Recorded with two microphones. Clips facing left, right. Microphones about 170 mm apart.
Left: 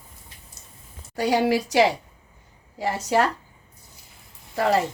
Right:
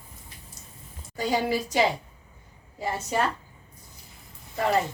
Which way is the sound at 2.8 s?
85° left.